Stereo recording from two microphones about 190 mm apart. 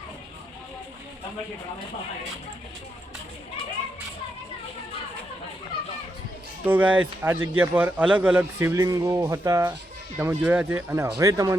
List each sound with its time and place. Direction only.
6.7 s a man's voice: 10° right (ahead or behind)